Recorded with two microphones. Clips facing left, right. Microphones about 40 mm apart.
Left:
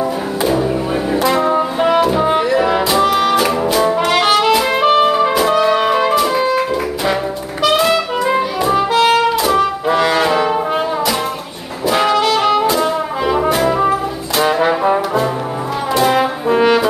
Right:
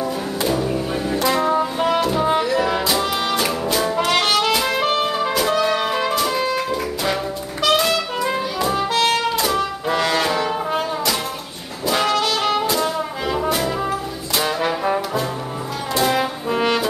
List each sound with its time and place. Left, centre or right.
0.4 s music: centre
7.6 s music: centre
11.9 s brass instrument: centre
14.5 s trombone: centre
15.9 s brass instrument: centre